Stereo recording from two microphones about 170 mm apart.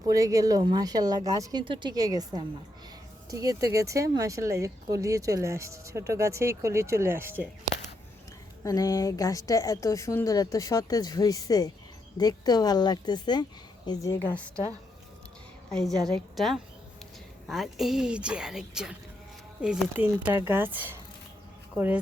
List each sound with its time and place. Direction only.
0.0 s speech: 20° right (ahead or behind)
8.6 s a woman's voice: 20° left (ahead or behind)
15.7 s a woman's voice: 5° left (ahead or behind)